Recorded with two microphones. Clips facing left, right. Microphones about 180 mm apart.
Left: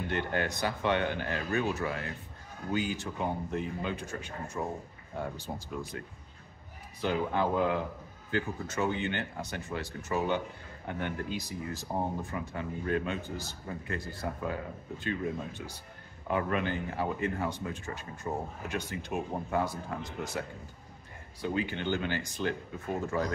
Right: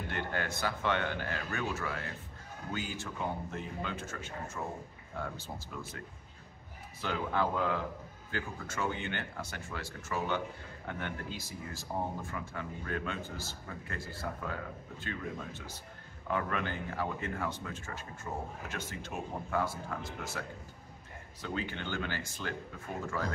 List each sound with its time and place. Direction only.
0.1 s speech: 20° left (ahead or behind)
7.0 s speech: 15° left (ahead or behind)